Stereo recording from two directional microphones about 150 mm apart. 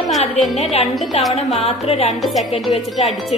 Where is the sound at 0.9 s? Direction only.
Centre (ahead or behind).